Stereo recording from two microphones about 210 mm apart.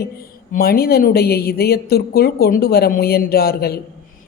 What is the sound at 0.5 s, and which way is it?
Speech, 45° left (ahead or behind).